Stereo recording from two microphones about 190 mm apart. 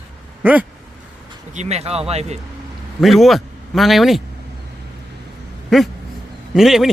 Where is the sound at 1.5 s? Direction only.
35° right (ahead or behind).